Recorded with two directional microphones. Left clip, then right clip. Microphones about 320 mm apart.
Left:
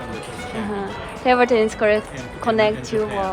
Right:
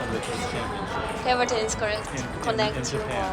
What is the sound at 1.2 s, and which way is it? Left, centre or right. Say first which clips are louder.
A woman's voice: left 9 dB; centre.